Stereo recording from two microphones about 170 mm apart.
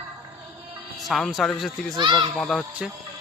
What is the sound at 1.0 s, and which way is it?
Speech, centre (ahead or behind).